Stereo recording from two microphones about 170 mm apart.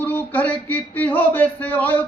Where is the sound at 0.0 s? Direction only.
10° left (ahead or behind).